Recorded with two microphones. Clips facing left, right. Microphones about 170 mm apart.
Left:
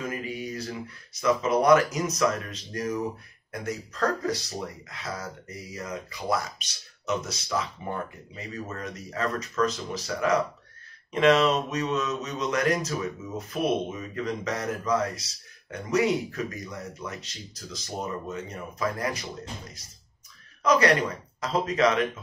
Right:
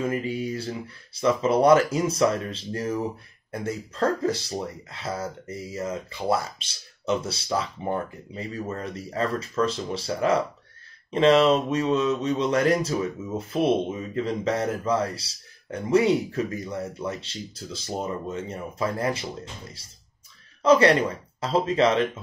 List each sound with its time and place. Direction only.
0.0 s mantra: 30° right (ahead or behind)